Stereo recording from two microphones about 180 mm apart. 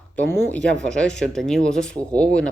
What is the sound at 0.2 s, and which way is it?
Speech, 10° left (ahead or behind).